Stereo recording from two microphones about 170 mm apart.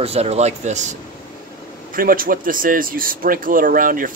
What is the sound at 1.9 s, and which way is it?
Speech, 55° right (ahead or behind).